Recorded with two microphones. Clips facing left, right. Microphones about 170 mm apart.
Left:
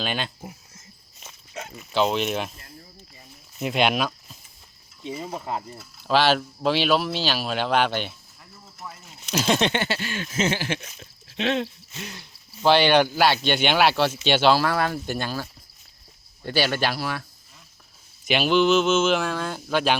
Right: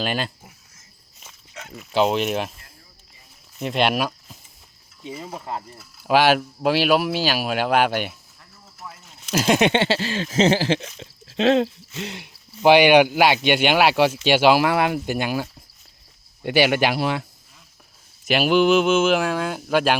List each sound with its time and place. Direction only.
0.0 s speech: 5° right (ahead or behind)
2.0 s speech: 5° right (ahead or behind)
3.6 s speech: centre (ahead or behind)
5.7 s speech: 5° right (ahead or behind)
8.8 s a sound: 5° left (ahead or behind)
9.3 s speech: 10° right (ahead or behind)
9.7 s a sound: 30° right (ahead or behind)
11.9 s speech: 25° right (ahead or behind)
18.3 s speech: 5° right (ahead or behind)